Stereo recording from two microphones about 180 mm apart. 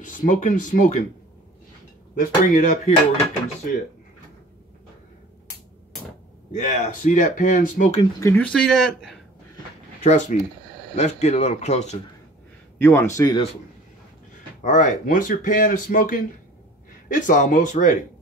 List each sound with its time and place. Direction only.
0.0 s speech: 45° left (ahead or behind)
2.1 s speech: 45° left (ahead or behind)
6.5 s speech: 40° left (ahead or behind)
8.2 s speech: 10° left (ahead or behind)
10.0 s speech: 40° left (ahead or behind)
12.7 s a man's voice: 15° left (ahead or behind)
14.6 s speech: 45° left (ahead or behind)